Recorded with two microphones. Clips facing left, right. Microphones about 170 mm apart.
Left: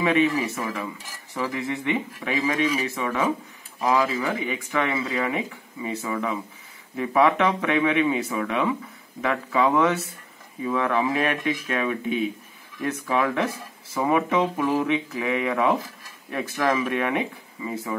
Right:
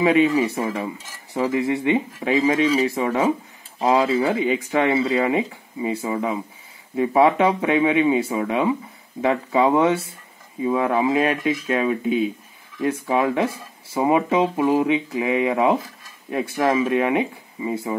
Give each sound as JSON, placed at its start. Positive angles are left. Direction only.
{"t": 0.3, "sound": "speech", "side_deg": -15}
{"t": 0.6, "sound": "dishes", "side_deg": -25}
{"t": 2.9, "sound": "speech", "side_deg": -35}
{"t": 4.0, "sound": "dishes", "side_deg": -25}
{"t": 5.5, "sound": "speech", "side_deg": -25}
{"t": 6.0, "sound": "dishes", "side_deg": -25}